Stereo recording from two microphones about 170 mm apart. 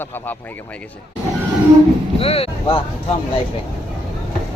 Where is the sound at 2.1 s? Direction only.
35° left (ahead or behind).